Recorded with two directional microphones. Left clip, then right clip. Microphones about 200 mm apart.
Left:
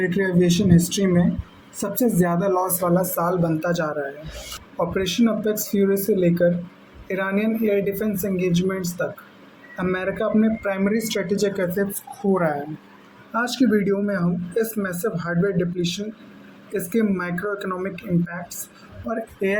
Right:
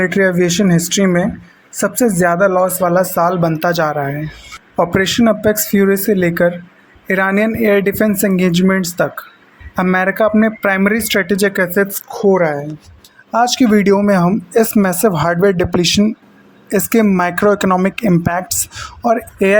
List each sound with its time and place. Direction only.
0.0 s speech: 40° right (ahead or behind)
12.3 s a woman's voice: 35° right (ahead or behind)
13.3 s speech: 50° right (ahead or behind)